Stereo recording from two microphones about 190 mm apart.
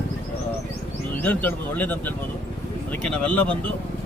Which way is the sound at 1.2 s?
10° left (ahead or behind).